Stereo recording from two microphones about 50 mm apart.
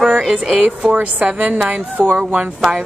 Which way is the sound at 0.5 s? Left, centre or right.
Right.